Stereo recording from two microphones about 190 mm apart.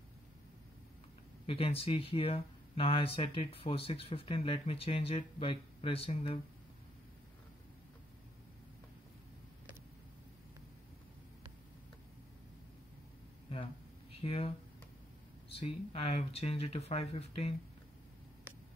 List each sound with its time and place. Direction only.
1.4 s speech: 30° left (ahead or behind)
14.2 s speech: 30° left (ahead or behind)
15.5 s speech: 30° left (ahead or behind)